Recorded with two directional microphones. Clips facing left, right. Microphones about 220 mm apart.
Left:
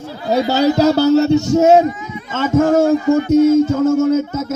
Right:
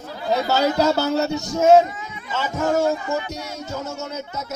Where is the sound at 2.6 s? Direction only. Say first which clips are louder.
Left 9 dB; 50° left (ahead or behind).